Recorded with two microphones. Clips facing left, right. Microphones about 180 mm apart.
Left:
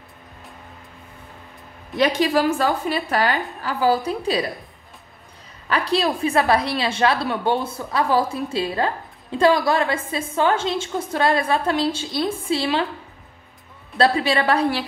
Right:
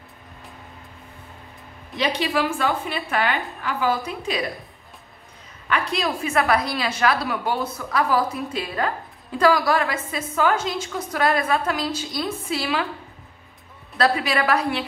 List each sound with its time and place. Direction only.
2.0 s a woman's voice: 40° left (ahead or behind)
5.7 s a woman's voice: 35° left (ahead or behind)
13.9 s a woman's voice: 30° left (ahead or behind)